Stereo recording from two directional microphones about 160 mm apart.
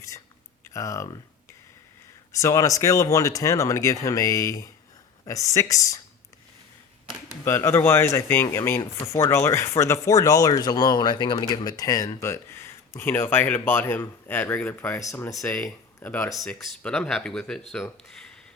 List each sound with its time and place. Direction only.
0.7 s speech: 20° left (ahead or behind)
2.3 s speech: 20° left (ahead or behind)
7.4 s speech: 15° left (ahead or behind)
16.3 s speech: centre (ahead or behind)